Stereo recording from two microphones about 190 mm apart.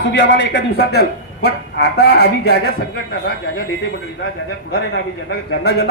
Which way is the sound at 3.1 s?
70° left (ahead or behind).